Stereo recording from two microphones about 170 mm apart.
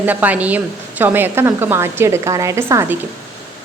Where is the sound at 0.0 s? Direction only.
10° right (ahead or behind).